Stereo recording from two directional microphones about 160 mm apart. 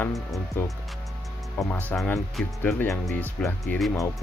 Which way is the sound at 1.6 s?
10° left (ahead or behind).